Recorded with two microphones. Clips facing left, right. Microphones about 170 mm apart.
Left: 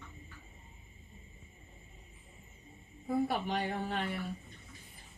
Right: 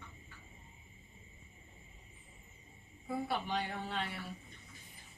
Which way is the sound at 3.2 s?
45° left (ahead or behind).